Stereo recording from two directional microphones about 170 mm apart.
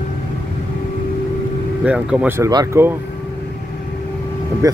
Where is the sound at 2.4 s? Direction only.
20° right (ahead or behind).